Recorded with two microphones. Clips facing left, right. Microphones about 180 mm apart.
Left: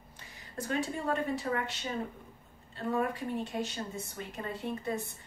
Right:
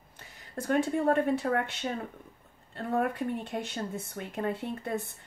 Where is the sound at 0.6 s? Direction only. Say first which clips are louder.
Right 6 dB; 55° right (ahead or behind).